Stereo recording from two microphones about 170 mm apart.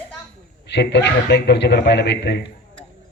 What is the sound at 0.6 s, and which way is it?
A man's voice, 90° left.